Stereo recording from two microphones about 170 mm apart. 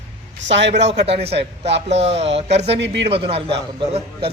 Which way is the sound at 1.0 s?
35° right (ahead or behind).